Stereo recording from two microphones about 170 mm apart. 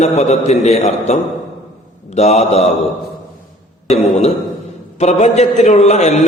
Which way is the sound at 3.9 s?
40° left (ahead or behind).